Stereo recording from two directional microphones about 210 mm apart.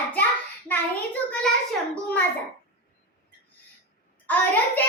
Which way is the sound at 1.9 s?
5° left (ahead or behind).